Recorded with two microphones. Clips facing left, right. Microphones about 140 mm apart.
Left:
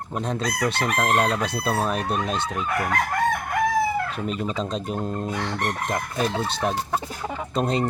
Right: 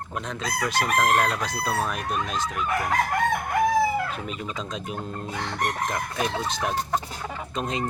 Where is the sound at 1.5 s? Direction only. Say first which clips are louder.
Left 3 dB; 30° left (ahead or behind).